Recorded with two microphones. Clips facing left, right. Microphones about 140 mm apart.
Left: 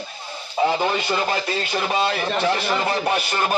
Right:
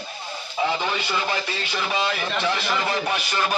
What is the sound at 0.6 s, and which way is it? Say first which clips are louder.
Speech: left 4 dB; 35° left (ahead or behind).